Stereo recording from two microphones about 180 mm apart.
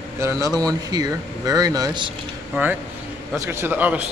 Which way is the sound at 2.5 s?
10° right (ahead or behind).